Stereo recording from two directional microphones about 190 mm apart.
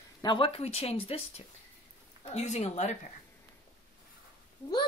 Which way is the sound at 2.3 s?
35° left (ahead or behind).